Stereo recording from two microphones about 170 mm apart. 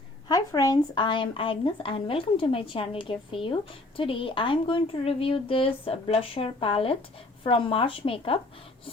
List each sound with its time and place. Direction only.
0.3 s a woman's voice: 20° left (ahead or behind)